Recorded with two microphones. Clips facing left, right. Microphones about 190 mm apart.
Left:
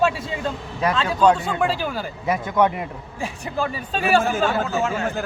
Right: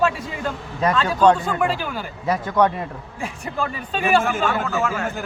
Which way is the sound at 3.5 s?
35° left (ahead or behind).